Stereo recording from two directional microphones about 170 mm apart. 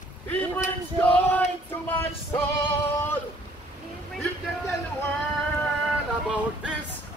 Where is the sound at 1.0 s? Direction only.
10° left (ahead or behind).